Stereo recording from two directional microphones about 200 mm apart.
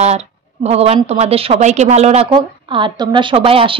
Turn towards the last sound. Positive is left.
turn(degrees=-25)  # may be behind; listen again after turning